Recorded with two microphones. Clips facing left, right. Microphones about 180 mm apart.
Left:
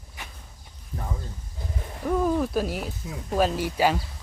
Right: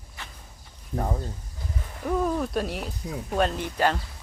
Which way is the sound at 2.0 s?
Centre (ahead or behind).